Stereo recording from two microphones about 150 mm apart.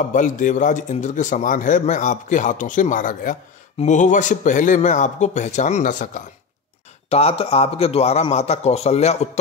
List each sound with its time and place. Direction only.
0.0 s a man's voice: 60° left (ahead or behind)
7.1 s speech: 40° left (ahead or behind)